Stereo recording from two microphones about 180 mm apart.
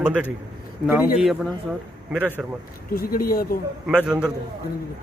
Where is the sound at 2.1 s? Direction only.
10° right (ahead or behind).